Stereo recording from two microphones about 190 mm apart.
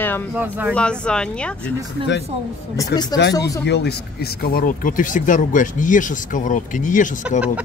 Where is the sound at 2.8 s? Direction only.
20° left (ahead or behind).